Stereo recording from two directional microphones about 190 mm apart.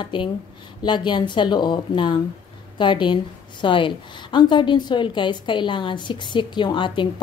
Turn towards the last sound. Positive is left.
turn(degrees=25)  # may be behind; listen again after turning